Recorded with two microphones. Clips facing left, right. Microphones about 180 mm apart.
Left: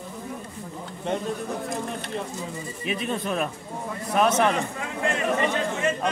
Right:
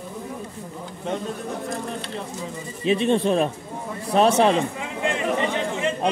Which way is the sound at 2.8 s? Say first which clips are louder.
Right 9 dB; 25° right (ahead or behind).